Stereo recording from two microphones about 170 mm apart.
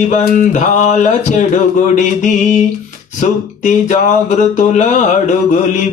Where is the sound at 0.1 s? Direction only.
45° left (ahead or behind).